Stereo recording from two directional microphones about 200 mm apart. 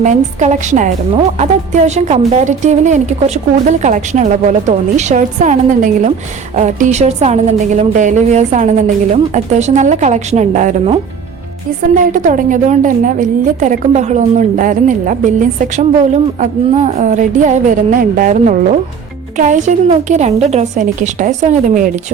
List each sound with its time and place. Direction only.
0.0 s a woman's voice: 35° right (ahead or behind)